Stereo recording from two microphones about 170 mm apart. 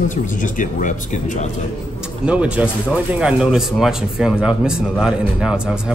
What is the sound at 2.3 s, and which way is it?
A man's voice, 5° right (ahead or behind).